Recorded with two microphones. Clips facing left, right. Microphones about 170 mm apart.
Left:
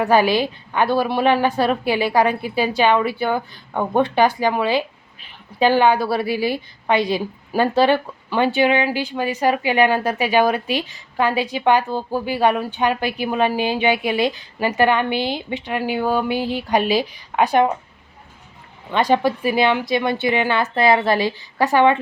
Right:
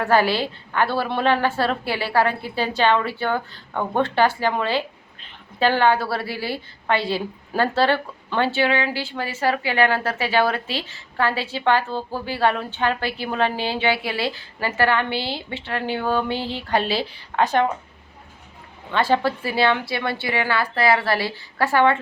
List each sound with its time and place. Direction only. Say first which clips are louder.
0.0 s a woman's voice: left 3 dB; 15° left (ahead or behind)
18.9 s a woman's voice: left 3 dB; 15° left (ahead or behind)